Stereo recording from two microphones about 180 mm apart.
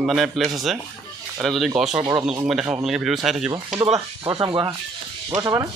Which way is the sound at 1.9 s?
20° right (ahead or behind).